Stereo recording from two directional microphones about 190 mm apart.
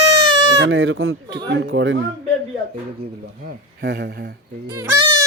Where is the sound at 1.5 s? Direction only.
70° right (ahead or behind).